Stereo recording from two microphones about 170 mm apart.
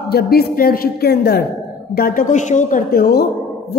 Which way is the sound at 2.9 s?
65° left (ahead or behind).